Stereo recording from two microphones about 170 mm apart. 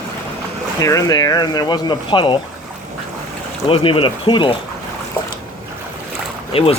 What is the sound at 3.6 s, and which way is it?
Speech, 30° left (ahead or behind).